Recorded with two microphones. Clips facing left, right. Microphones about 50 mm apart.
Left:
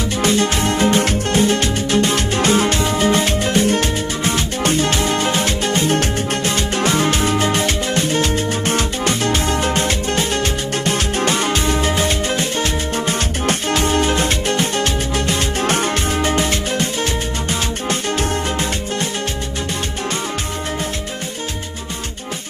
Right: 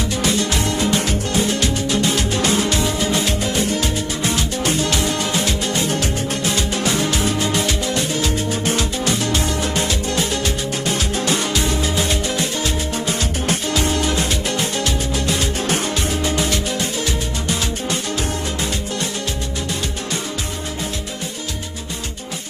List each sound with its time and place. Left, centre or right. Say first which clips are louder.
0.2 s music: left 5 dB; left